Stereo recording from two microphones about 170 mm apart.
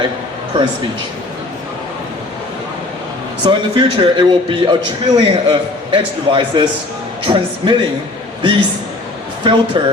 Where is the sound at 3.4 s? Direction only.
30° right (ahead or behind).